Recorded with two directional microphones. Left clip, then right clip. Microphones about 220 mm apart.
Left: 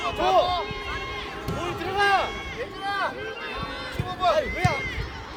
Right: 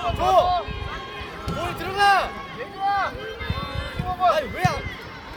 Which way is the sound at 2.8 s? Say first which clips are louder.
Right 7 dB; 50° left (ahead or behind).